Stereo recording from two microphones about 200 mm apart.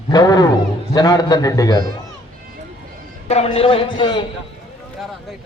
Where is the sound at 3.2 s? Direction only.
30° left (ahead or behind).